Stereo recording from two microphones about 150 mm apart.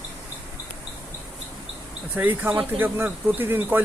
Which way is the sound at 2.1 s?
10° right (ahead or behind).